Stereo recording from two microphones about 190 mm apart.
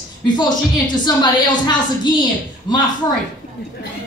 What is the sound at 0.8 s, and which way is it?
Speech, 20° left (ahead or behind).